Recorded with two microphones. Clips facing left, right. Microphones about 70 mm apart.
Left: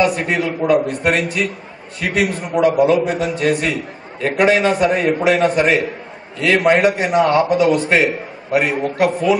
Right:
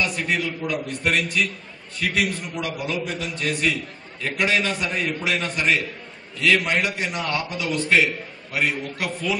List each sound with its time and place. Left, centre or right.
0.0 s a man's voice: left